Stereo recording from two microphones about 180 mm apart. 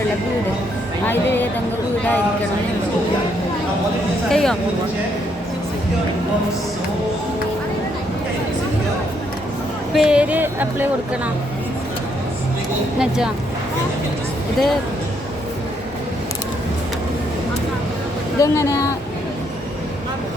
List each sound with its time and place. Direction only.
1.0 s a woman's voice: 10° left (ahead or behind)
4.3 s speech: 5° left (ahead or behind)
9.9 s speech: 5° right (ahead or behind)
13.0 s speech: 5° right (ahead or behind)
18.3 s speech: 15° left (ahead or behind)